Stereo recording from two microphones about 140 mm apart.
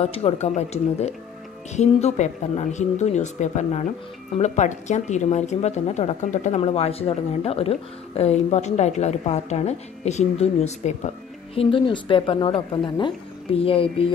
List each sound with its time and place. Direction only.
0.0 s speech: 45° left (ahead or behind)
11.5 s a woman's voice: 40° left (ahead or behind)